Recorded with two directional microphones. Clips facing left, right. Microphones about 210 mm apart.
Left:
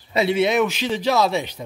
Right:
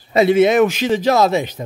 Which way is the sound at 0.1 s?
50° right (ahead or behind).